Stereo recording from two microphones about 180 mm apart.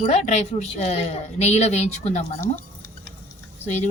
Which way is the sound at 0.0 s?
40° left (ahead or behind).